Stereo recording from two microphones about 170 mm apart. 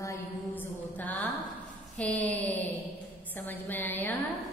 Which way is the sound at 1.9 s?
10° left (ahead or behind).